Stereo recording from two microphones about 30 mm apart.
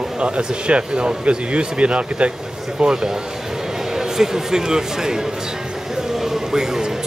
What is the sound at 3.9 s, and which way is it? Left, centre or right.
A man's voice, centre.